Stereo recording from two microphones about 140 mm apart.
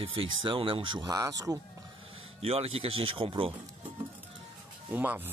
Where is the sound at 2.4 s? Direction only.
45° right (ahead or behind).